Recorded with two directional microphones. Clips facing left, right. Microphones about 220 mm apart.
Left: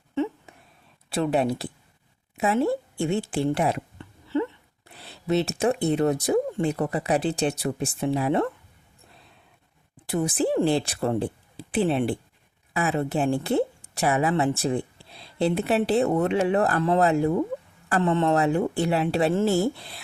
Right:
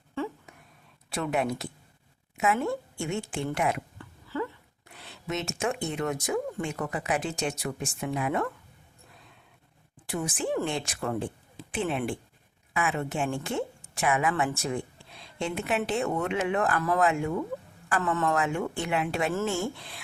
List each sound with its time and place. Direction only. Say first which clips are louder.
0.1 s a sound: left 6 dB; 20° left (ahead or behind)
1.1 s speech: left 5 dB; 30° left (ahead or behind)
10.1 s speech: left 6 dB; 35° left (ahead or behind)